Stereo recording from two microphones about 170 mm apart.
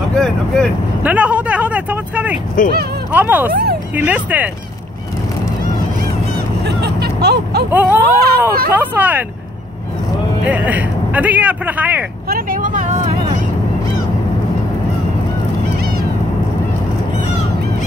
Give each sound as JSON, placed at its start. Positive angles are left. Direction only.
{"t": 0.1, "sound": "speech", "side_deg": 5}
{"t": 1.0, "sound": "vehicle", "side_deg": -10}
{"t": 3.1, "sound": "speech", "side_deg": -10}
{"t": 6.6, "sound": "vehicle", "side_deg": -70}
{"t": 7.7, "sound": "speech", "side_deg": -10}
{"t": 8.0, "sound": "speech", "side_deg": -65}
{"t": 8.7, "sound": "speech", "side_deg": -10}
{"t": 10.4, "sound": "speech", "side_deg": -10}
{"t": 12.3, "sound": "vehicle", "side_deg": -55}